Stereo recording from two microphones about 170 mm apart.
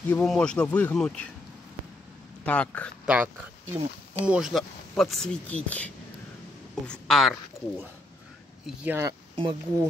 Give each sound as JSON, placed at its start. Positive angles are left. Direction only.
{"t": 0.1, "sound": "speech", "side_deg": 5}
{"t": 2.4, "sound": "speech", "side_deg": 10}
{"t": 3.1, "sound": "a woman's voice", "side_deg": -10}
{"t": 8.6, "sound": "speech", "side_deg": -10}
{"t": 9.3, "sound": "speech", "side_deg": -30}